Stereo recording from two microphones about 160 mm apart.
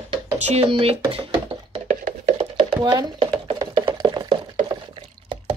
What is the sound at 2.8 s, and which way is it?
Speech, 25° right (ahead or behind).